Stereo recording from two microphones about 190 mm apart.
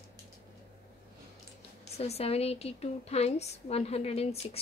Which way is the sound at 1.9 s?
35° left (ahead or behind).